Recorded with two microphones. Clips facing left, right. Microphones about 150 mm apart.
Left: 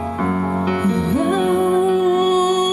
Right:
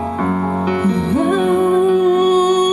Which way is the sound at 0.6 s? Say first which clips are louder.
Right 2 dB; 10° left (ahead or behind).